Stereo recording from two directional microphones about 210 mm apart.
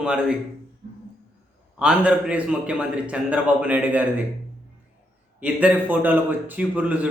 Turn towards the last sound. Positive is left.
turn(degrees=-5)  # may be behind; listen again after turning